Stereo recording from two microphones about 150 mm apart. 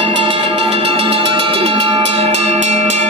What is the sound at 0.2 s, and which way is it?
Music, 35° right (ahead or behind).